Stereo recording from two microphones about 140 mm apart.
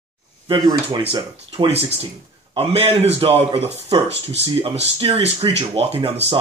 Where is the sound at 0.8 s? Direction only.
40° right (ahead or behind).